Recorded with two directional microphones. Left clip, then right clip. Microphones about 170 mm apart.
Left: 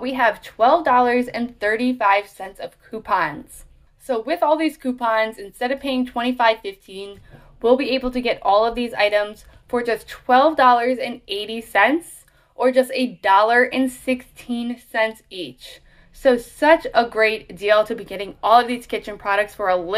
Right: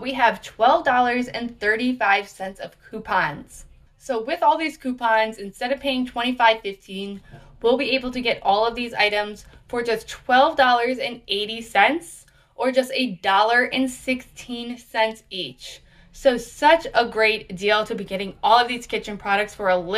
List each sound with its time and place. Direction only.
0.0 s speech: 35° left (ahead or behind)